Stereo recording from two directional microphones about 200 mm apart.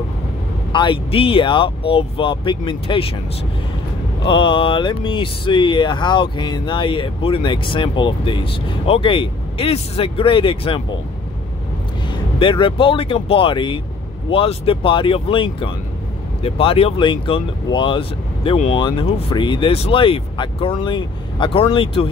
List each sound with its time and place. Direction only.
0.7 s speech: 25° left (ahead or behind)
4.2 s speech: 25° left (ahead or behind)
12.4 s speech: 25° left (ahead or behind)